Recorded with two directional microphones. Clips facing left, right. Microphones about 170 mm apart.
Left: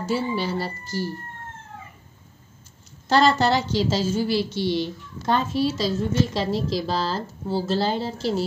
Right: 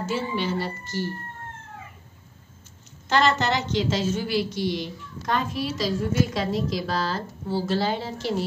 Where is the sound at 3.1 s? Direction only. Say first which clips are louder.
Left 3 dB; 35° left (ahead or behind).